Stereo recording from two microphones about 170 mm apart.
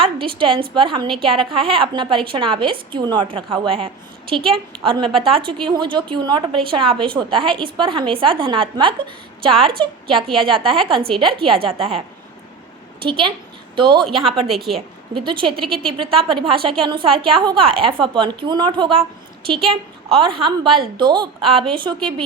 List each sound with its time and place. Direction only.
0.0 s a woman's voice: 30° right (ahead or behind)
4.4 s a woman's voice: centre (ahead or behind)
4.8 s a woman's voice: 30° right (ahead or behind)
9.5 s a woman's voice: centre (ahead or behind)
9.7 s a woman's voice: 30° right (ahead or behind)
10.2 s a woman's voice: centre (ahead or behind)
10.8 s a woman's voice: 30° right (ahead or behind)
14.5 s a woman's voice: centre (ahead or behind)
15.1 s a woman's voice: 30° right (ahead or behind)